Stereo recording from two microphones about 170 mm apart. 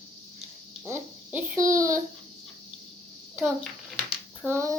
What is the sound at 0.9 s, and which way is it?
A child's voice, 15° right (ahead or behind).